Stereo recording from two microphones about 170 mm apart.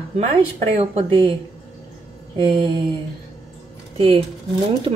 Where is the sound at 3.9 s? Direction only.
35° right (ahead or behind).